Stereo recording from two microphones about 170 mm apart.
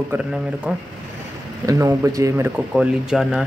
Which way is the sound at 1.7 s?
20° right (ahead or behind).